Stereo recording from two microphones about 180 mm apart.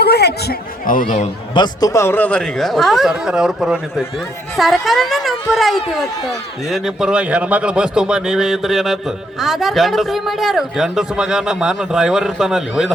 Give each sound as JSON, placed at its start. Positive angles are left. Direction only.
{"t": 0.0, "sound": "speech", "side_deg": 65}
{"t": 1.5, "sound": "a man's voice", "side_deg": 20}